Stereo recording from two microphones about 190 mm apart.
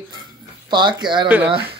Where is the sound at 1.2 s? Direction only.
10° right (ahead or behind).